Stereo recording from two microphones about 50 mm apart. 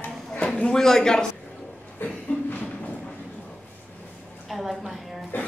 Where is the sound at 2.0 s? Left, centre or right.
Left.